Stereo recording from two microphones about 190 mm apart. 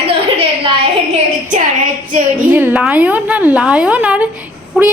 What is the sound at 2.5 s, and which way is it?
Speech, 10° right (ahead or behind).